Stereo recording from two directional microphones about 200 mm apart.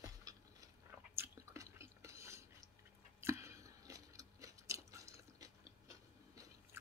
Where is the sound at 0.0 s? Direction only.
15° right (ahead or behind).